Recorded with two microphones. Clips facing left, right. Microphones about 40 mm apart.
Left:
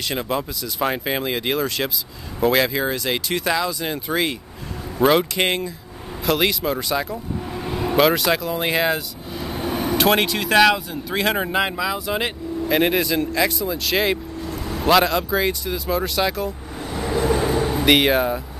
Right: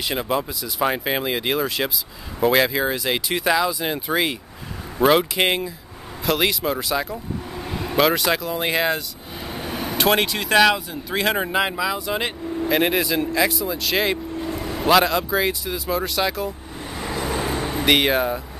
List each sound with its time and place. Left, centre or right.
0.1 s speech: centre
14.4 s vehicle: centre
14.7 s speech: centre